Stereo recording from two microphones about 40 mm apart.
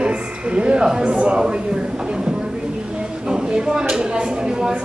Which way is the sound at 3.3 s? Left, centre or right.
Centre.